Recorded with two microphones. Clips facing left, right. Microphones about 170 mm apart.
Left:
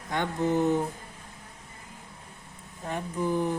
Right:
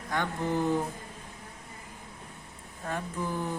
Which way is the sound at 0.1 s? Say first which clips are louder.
Left 3 dB; 20° left (ahead or behind).